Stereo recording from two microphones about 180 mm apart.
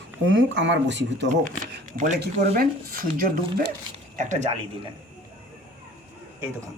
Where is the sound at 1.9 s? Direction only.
45° right (ahead or behind).